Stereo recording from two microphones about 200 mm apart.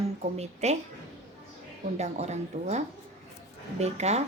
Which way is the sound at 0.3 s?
35° right (ahead or behind).